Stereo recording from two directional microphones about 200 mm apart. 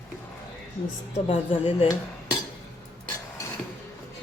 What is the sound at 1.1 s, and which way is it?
Speech, 30° left (ahead or behind).